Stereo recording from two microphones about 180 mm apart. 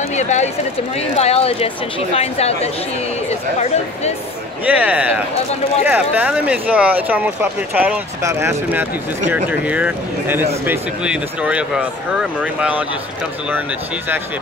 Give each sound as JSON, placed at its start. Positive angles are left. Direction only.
{"t": 0.1, "sound": "speech", "side_deg": 40}
{"t": 4.6, "sound": "speech", "side_deg": -10}